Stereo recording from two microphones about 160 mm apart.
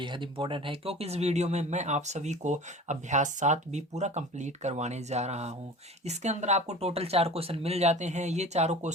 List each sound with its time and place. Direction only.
0.0 s speech: 30° right (ahead or behind)